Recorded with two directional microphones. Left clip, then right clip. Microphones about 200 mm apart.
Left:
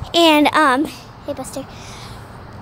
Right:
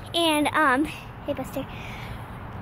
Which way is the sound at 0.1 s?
50° left (ahead or behind).